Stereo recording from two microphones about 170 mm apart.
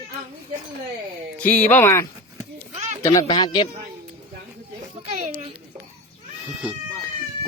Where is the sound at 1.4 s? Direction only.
10° left (ahead or behind).